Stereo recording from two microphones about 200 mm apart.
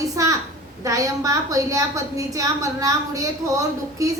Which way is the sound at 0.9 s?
15° right (ahead or behind).